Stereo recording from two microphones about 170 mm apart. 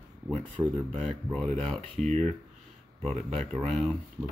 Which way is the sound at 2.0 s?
40° right (ahead or behind).